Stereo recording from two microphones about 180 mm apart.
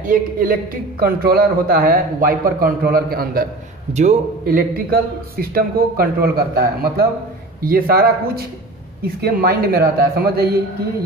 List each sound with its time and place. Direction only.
0.0 s speech: 50° right (ahead or behind)
3.9 s speech: 40° right (ahead or behind); by 10.5 s 60° right (ahead or behind)